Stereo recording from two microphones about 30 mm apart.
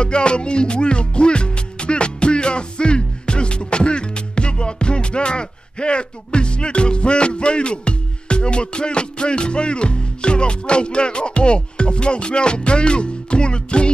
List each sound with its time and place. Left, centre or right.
0.0 s music: left